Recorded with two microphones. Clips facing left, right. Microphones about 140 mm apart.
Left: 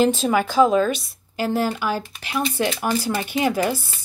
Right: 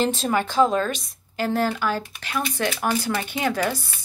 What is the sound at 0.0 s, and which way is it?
Speech, 5° left (ahead or behind).